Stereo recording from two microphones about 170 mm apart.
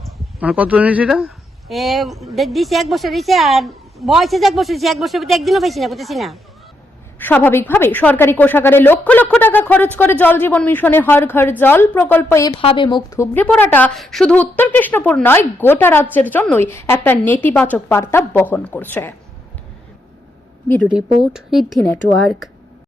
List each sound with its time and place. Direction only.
0.3 s speech: 10° right (ahead or behind)
7.2 s a woman's voice: 10° left (ahead or behind)
12.5 s a woman's voice: 30° left (ahead or behind); by 19.1 s 10° left (ahead or behind)
21.3 s speech: centre (ahead or behind)